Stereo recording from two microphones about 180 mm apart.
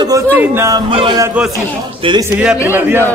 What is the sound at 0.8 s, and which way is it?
Speech, 30° right (ahead or behind).